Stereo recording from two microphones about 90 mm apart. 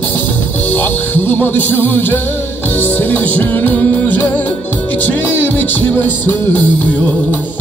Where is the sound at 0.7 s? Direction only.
20° left (ahead or behind).